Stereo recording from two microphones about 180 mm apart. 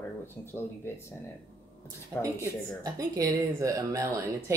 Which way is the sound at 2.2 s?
20° right (ahead or behind).